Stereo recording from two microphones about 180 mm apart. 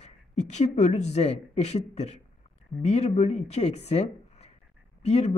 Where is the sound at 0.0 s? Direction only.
40° left (ahead or behind).